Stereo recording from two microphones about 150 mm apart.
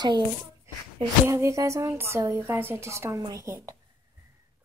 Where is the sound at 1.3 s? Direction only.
20° right (ahead or behind).